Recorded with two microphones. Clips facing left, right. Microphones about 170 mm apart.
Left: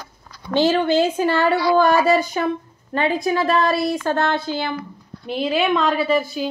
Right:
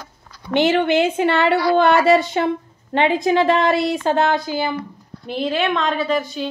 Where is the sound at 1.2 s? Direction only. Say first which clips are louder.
Right 1 dB; 70° right (ahead or behind).